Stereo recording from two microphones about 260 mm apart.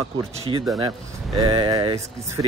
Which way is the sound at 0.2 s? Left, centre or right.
Centre.